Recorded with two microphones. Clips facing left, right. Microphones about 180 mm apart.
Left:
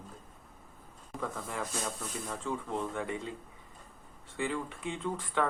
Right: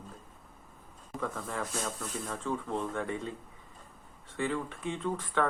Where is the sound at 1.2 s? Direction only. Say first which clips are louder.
Right 1 dB; 15° left (ahead or behind).